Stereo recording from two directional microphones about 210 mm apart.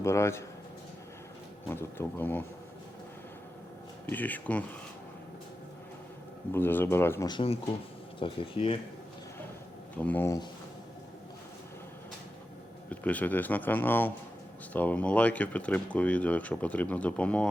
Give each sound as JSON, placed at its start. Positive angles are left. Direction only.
{"t": 0.0, "sound": "speech", "side_deg": 10}
{"t": 1.6, "sound": "speech", "side_deg": 10}
{"t": 4.1, "sound": "speech", "side_deg": 10}
{"t": 6.5, "sound": "speech", "side_deg": 10}
{"t": 10.0, "sound": "speech", "side_deg": 10}
{"t": 12.9, "sound": "speech", "side_deg": 5}